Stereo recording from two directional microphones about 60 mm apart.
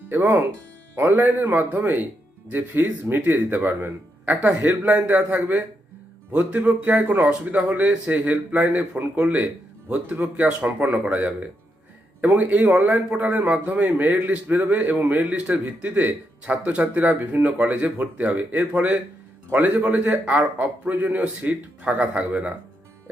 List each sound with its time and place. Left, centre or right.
0.1 s speech: right
4.6 s speech: right